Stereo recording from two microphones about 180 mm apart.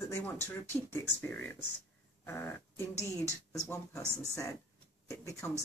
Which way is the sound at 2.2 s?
10° left (ahead or behind).